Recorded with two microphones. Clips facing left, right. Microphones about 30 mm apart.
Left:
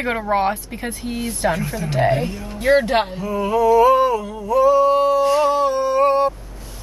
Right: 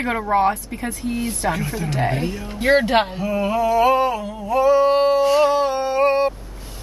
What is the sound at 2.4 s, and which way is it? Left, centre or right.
Speech, right.